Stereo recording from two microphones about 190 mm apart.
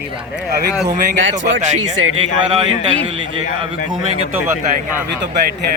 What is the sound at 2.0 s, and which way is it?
Speech, 90° right.